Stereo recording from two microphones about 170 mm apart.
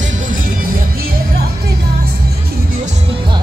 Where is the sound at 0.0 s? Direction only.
50° right (ahead or behind).